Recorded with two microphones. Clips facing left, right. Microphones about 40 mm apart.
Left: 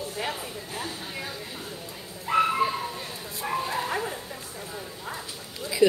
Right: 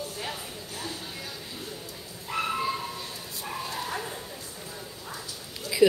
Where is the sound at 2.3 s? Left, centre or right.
Left.